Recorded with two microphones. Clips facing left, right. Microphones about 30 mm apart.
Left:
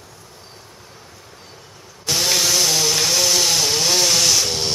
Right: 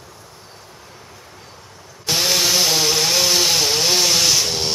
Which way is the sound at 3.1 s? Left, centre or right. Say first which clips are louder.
Right 1 dB; centre.